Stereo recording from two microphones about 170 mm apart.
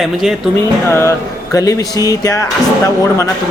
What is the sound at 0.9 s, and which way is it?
Speech, 15° left (ahead or behind).